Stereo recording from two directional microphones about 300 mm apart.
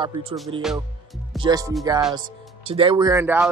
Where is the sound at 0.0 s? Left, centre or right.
Centre.